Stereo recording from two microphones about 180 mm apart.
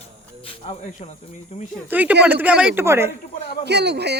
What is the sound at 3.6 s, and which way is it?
Speech, 70° right (ahead or behind).